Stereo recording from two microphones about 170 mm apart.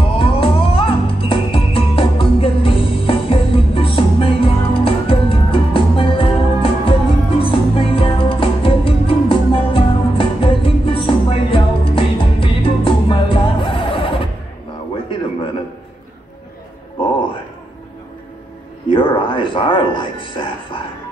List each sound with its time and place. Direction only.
0.2 s music: 35° left (ahead or behind)
18.9 s music: 30° left (ahead or behind)